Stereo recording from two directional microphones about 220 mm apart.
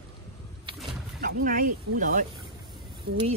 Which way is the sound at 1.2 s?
40° right (ahead or behind).